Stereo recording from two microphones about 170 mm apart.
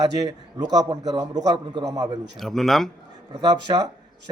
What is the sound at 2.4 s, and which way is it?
Speech, centre (ahead or behind).